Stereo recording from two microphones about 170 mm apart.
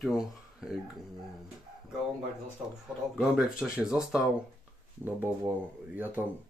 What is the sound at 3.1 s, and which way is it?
Speech, centre (ahead or behind).